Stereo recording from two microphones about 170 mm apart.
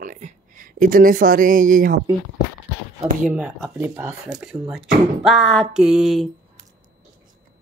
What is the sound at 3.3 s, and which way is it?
Speech, 10° right (ahead or behind).